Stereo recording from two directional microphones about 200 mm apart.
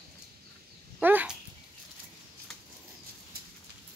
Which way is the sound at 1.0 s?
5° right (ahead or behind).